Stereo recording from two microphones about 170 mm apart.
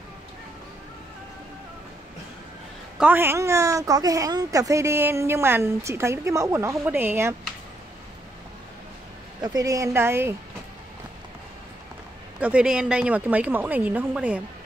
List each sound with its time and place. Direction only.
3.0 s a woman's voice: 10° right (ahead or behind)
9.4 s a woman's voice: 20° right (ahead or behind)
12.4 s a woman's voice: 5° right (ahead or behind)